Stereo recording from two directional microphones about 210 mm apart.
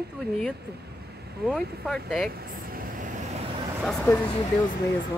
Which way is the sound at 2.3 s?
45° right (ahead or behind).